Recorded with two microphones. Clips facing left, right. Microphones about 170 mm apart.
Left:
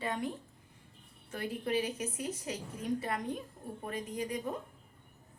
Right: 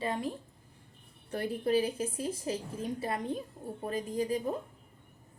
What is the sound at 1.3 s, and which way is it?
A woman's voice, 35° right (ahead or behind).